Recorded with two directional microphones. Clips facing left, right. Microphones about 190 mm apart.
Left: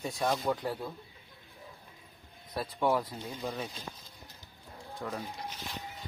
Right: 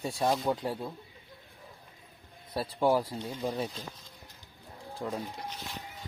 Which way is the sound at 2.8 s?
30° right (ahead or behind).